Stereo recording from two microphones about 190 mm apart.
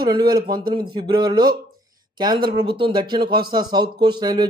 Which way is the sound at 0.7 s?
25° right (ahead or behind).